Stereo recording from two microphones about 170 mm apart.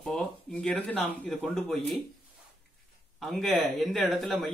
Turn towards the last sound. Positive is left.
turn(degrees=0)  # may be behind; listen again after turning